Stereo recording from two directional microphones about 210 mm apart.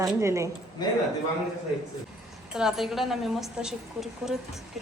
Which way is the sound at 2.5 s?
Centre (ahead or behind).